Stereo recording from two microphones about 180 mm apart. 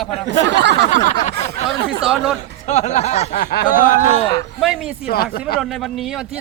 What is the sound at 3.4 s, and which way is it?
Speech, 50° left (ahead or behind).